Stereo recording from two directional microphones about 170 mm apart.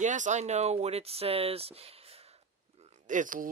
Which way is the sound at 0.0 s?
45° right (ahead or behind).